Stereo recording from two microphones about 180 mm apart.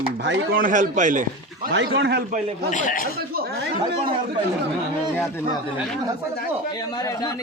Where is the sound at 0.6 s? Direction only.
45° right (ahead or behind).